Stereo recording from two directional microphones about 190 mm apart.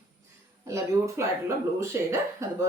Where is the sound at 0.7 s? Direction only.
15° right (ahead or behind).